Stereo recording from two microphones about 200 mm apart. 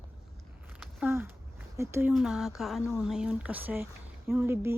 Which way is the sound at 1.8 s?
15° right (ahead or behind).